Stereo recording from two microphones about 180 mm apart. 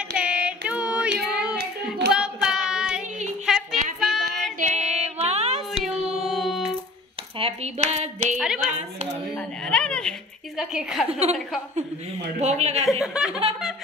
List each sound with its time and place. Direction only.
0.2 s child singing: 5° right (ahead or behind)
1.6 s hands: 65° right (ahead or behind)
2.1 s child singing: 5° right (ahead or behind)
3.5 s music: centre (ahead or behind)
4.2 s female singing: 60° right (ahead or behind)
4.6 s music: 40° right (ahead or behind)
6.2 s music: centre (ahead or behind)
7.3 s speech: 35° right (ahead or behind)
8.4 s a woman's voice: 5° right (ahead or behind)
11.1 s speech: 35° right (ahead or behind)
12.4 s speech: 40° right (ahead or behind)
13.0 s a woman's voice: 5° right (ahead or behind)